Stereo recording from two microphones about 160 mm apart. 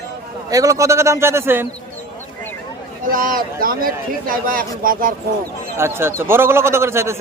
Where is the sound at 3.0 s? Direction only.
60° right (ahead or behind).